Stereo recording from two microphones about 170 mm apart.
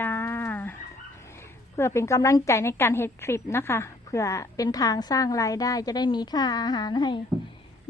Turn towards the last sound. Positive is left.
turn(degrees=25)  # may be behind; listen again after turning